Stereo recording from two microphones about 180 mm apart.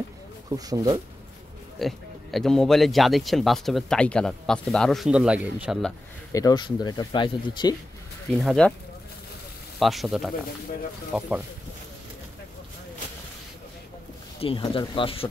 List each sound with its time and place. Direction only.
0.5 s speech: 20° right (ahead or behind)
1.8 s speech: centre (ahead or behind)
6.3 s speech: 20° left (ahead or behind)
8.4 s speech: centre (ahead or behind)
9.8 s speech: centre (ahead or behind)
14.4 s speech: 30° left (ahead or behind)